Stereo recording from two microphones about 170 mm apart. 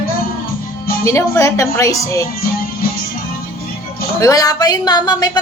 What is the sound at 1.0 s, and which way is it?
A woman's voice, 15° left (ahead or behind).